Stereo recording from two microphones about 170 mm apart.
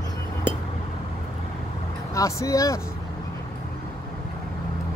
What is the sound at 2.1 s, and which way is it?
Speech, 20° left (ahead or behind).